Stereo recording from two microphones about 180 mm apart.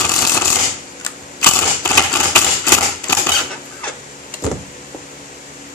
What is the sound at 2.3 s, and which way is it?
Typewriter, 10° left (ahead or behind).